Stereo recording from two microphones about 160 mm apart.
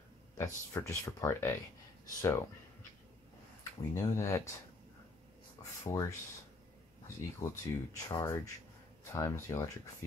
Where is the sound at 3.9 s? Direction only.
20° left (ahead or behind).